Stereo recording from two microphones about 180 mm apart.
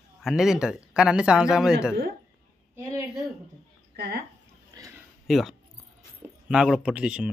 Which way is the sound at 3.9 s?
60° right (ahead or behind).